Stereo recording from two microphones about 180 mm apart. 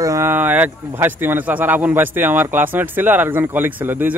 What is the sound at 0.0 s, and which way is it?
Speech, 15° right (ahead or behind).